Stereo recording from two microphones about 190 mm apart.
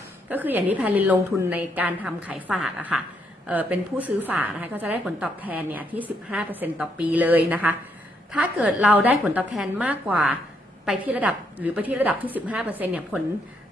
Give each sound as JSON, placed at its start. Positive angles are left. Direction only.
{"t": 0.3, "sound": "a woman's voice", "side_deg": -10}